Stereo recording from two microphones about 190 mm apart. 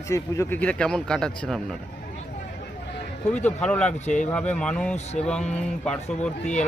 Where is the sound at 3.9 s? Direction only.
40° left (ahead or behind).